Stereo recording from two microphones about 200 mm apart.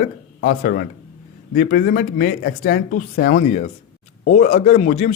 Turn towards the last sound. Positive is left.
turn(degrees=35)  # may be behind; listen again after turning